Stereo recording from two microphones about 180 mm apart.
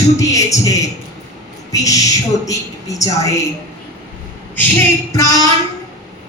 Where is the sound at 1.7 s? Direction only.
20° left (ahead or behind).